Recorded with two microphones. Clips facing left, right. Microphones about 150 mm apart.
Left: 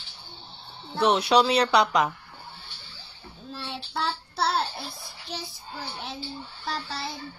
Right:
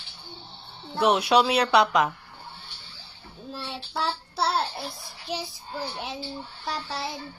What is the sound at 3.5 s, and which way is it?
Speech, 5° right (ahead or behind).